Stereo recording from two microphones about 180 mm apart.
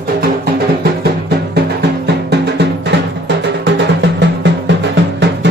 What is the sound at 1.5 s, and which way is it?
Music, 65° right (ahead or behind).